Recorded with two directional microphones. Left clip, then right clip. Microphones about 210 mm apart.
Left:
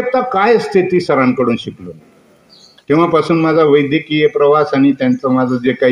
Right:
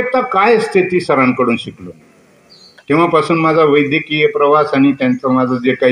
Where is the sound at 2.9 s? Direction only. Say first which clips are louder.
Even; 60° left (ahead or behind).